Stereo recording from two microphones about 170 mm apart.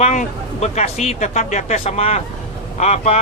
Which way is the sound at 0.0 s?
40° left (ahead or behind).